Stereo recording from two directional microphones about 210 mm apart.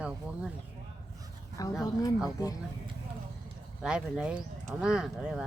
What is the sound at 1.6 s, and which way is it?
Speech, 15° left (ahead or behind).